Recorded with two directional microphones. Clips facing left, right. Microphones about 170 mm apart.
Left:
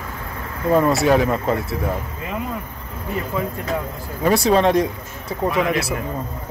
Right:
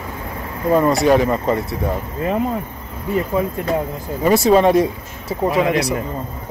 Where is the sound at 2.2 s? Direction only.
40° right (ahead or behind).